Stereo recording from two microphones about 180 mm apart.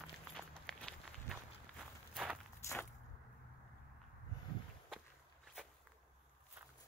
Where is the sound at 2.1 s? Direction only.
5° right (ahead or behind).